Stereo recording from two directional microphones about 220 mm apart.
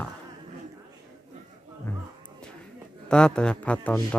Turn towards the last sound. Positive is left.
turn(degrees=5)  # may be behind; listen again after turning